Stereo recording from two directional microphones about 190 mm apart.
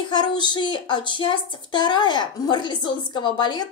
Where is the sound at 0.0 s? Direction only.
25° left (ahead or behind).